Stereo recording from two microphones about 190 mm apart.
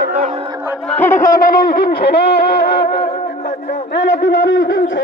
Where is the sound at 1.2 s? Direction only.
50° left (ahead or behind).